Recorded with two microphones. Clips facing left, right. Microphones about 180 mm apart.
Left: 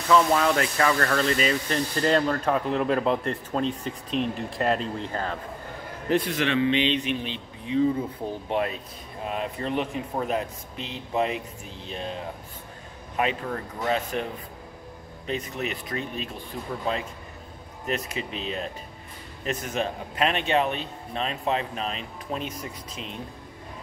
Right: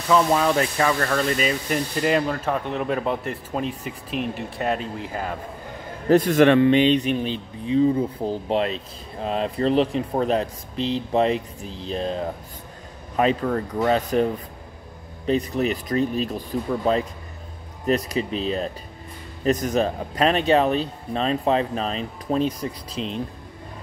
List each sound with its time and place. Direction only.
0.1 s speech: 15° right (ahead or behind)
6.0 s speech: 45° right (ahead or behind)
13.8 s speech: 35° right (ahead or behind)
15.2 s speech: 35° right (ahead or behind)